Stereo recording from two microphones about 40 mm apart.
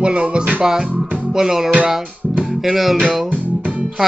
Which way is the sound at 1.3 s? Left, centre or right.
Centre.